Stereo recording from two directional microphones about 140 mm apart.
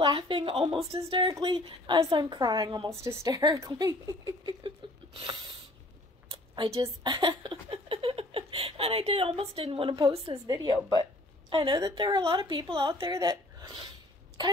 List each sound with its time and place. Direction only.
0.0 s a woman's voice: 35° right (ahead or behind)
3.0 s speech: 20° right (ahead or behind); by 5.6 s 40° right (ahead or behind)
6.3 s a sound: 35° right (ahead or behind)
7.0 s speech: 35° right (ahead or behind)
10.1 s a woman's voice: 45° right (ahead or behind)
10.4 s a woman's voice: 30° right (ahead or behind)
13.1 s speech: 25° right (ahead or behind)